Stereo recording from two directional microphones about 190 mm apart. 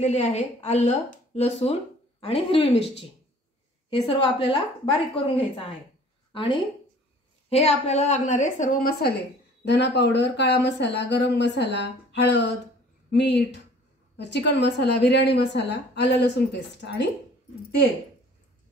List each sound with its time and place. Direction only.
0.0 s speech: 35° left (ahead or behind)
4.1 s a woman's voice: 30° left (ahead or behind)
7.4 s speech: 35° left (ahead or behind)
9.7 s a woman's voice: 65° left (ahead or behind)